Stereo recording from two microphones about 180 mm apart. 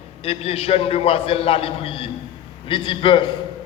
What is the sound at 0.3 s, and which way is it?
A man's voice, 35° left (ahead or behind).